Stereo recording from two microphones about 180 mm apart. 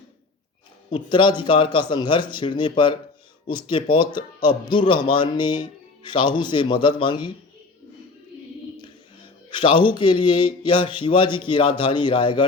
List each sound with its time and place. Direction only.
0.9 s a man's voice: 30° left (ahead or behind)
9.5 s a man's voice: 25° left (ahead or behind)